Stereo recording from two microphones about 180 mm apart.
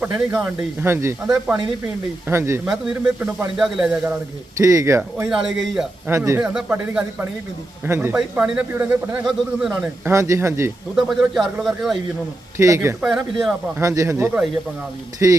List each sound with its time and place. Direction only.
0.3 s a man's voice: 10° right (ahead or behind)
4.5 s speech: 20° right (ahead or behind)
5.3 s a man's voice: centre (ahead or behind)
6.1 s a man's voice: 15° right (ahead or behind)
10.1 s speech: 15° right (ahead or behind)
10.9 s a man's voice: centre (ahead or behind)
12.5 s speech: 15° right (ahead or behind)
13.1 s a man's voice: centre (ahead or behind)
13.8 s speech: 15° right (ahead or behind)